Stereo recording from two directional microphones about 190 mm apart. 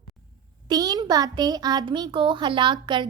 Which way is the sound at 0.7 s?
20° right (ahead or behind).